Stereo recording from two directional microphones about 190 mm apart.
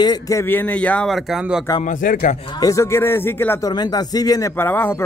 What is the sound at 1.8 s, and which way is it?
Speech, 45° left (ahead or behind).